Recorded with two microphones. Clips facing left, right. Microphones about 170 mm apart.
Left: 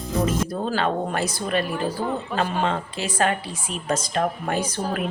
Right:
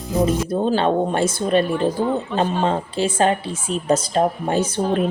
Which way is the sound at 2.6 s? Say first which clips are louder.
Right 5 dB; 35° right (ahead or behind).